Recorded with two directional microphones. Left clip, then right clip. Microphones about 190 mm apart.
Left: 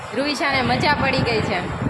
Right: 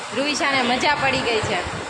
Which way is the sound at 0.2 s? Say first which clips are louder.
Even; 10° left (ahead or behind).